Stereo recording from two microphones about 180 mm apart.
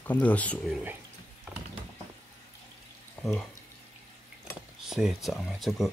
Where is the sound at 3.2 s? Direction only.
5° left (ahead or behind).